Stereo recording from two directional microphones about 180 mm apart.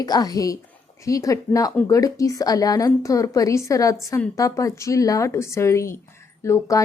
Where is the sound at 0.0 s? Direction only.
20° left (ahead or behind).